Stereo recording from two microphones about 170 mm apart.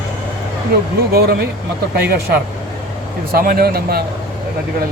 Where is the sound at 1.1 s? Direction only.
65° right (ahead or behind).